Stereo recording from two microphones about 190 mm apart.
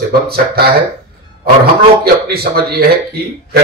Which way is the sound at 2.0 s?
55° right (ahead or behind).